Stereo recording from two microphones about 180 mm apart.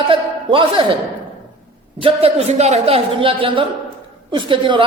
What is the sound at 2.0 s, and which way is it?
A man's voice, 30° right (ahead or behind).